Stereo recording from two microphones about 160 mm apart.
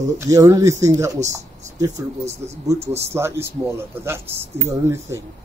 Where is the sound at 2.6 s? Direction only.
15° right (ahead or behind).